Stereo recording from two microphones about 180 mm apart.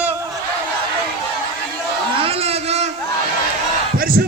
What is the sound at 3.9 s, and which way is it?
Battle cry, 50° right (ahead or behind).